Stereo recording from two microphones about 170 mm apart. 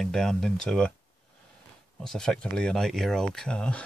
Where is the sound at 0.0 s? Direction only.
5° left (ahead or behind).